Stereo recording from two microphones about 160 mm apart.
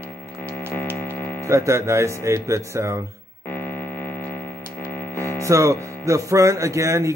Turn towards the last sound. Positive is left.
turn(degrees=-20)  # may be behind; listen again after turning